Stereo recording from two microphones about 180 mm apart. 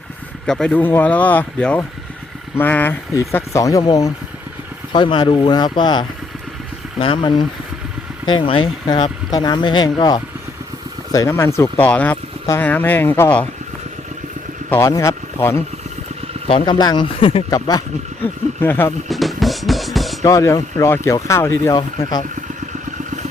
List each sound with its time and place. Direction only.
0.4 s speech: 5° left (ahead or behind)
14.7 s speech: 15° left (ahead or behind)
16.5 s speech: 25° left (ahead or behind); by 18.9 s 10° left (ahead or behind)
19.0 s music: centre (ahead or behind)
20.2 s speech: 15° left (ahead or behind)